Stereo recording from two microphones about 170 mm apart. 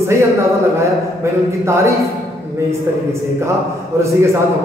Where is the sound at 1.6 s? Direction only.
15° right (ahead or behind).